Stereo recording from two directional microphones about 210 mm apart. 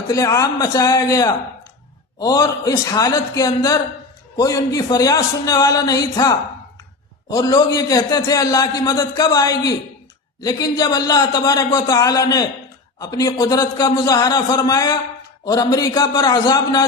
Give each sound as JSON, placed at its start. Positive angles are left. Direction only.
{"t": 0.1, "sound": "a man's voice", "side_deg": 15}